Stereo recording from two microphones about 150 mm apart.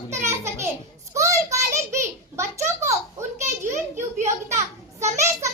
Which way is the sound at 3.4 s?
55° right (ahead or behind).